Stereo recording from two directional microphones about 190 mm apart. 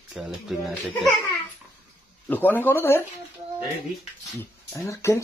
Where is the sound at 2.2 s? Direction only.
10° left (ahead or behind).